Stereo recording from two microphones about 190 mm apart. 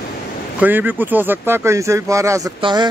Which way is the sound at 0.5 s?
10° right (ahead or behind).